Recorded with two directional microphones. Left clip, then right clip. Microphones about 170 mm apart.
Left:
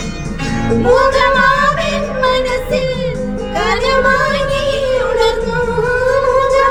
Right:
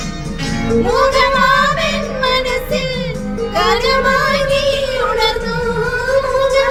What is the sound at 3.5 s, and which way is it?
Child singing, 15° left (ahead or behind).